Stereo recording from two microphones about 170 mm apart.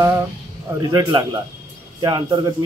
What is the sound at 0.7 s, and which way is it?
A man's voice, 25° right (ahead or behind).